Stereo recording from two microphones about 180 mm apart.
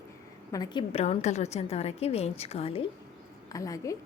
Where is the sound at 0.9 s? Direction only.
35° left (ahead or behind).